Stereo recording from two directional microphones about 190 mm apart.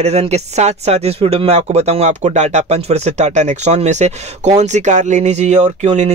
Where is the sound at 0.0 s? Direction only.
35° right (ahead or behind).